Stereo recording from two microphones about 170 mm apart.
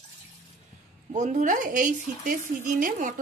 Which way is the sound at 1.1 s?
45° right (ahead or behind).